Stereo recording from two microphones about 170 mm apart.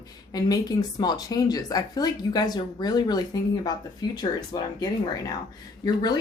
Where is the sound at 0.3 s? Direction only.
20° left (ahead or behind).